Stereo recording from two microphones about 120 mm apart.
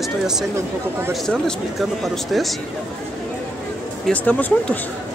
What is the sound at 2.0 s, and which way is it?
Speech, centre (ahead or behind).